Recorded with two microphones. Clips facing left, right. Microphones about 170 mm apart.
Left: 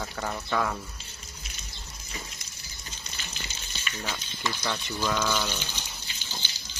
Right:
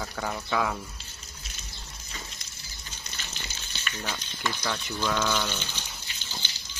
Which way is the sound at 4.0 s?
Centre (ahead or behind).